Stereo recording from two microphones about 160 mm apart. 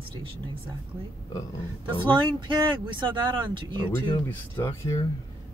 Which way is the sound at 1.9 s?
30° right (ahead or behind).